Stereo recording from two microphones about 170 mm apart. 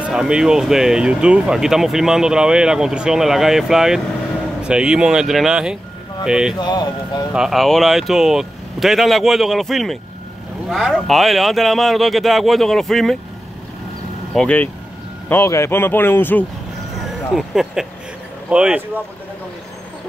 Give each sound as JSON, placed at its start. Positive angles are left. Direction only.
{"t": 0.1, "sound": "speech", "side_deg": -5}
{"t": 6.6, "sound": "speech", "side_deg": 25}
{"t": 7.3, "sound": "speech", "side_deg": 0}
{"t": 14.3, "sound": "speech", "side_deg": 5}
{"t": 16.9, "sound": "vehicle", "side_deg": 0}
{"t": 18.5, "sound": "speech", "side_deg": -5}